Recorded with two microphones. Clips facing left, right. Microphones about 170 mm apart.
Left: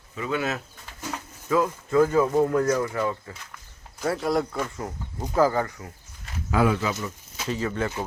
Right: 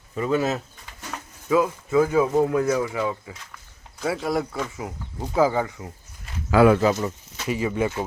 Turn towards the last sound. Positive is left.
turn(degrees=-10)  # may be behind; listen again after turning